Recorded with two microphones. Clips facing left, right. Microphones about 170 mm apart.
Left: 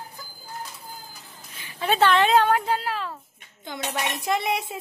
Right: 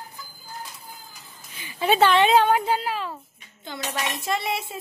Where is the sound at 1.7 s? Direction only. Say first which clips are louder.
Right 2 dB; 5° right (ahead or behind).